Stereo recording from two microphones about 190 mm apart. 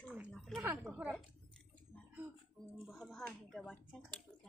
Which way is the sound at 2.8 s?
Centre (ahead or behind).